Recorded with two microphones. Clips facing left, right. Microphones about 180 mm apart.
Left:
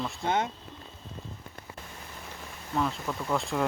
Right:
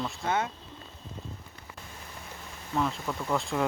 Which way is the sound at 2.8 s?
Centre (ahead or behind).